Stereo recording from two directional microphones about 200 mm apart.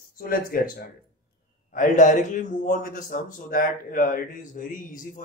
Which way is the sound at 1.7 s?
40° left (ahead or behind).